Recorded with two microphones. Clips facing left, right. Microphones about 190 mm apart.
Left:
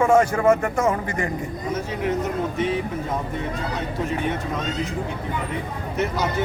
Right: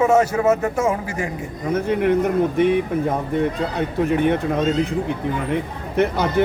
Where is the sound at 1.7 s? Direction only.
60° right (ahead or behind).